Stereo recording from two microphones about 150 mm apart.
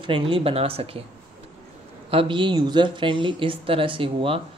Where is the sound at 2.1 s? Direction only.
30° right (ahead or behind).